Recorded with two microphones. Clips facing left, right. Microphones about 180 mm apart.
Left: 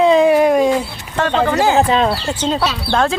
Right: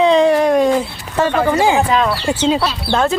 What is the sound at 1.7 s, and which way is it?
Speech, 30° left (ahead or behind).